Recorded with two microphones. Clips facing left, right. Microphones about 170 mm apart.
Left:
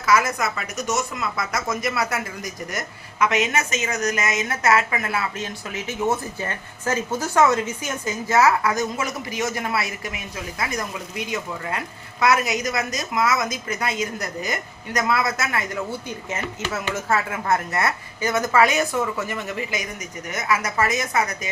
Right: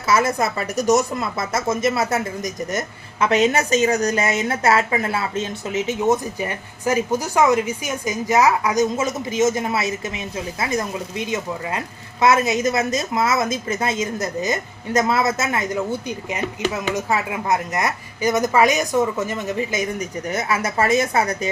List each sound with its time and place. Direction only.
0.0 s speech: 30° right (ahead or behind)